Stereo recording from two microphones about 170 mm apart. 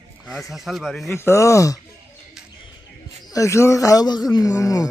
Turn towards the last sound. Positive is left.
turn(degrees=20)  # may be behind; listen again after turning